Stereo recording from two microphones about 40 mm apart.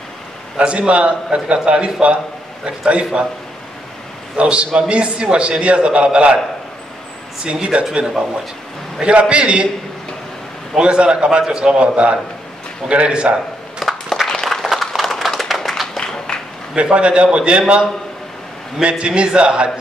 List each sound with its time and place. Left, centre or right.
0.6 s a man's voice: right
4.4 s a man's voice: right
7.4 s a man's voice: right
9.0 s a man's voice: right
10.7 s a man's voice: right
13.8 s crushing: centre
14.4 s a sound: centre
16.0 s a sound: left
16.7 s a man's voice: right